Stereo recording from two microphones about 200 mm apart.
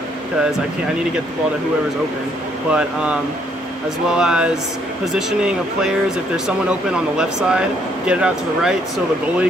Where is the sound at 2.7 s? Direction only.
5° right (ahead or behind).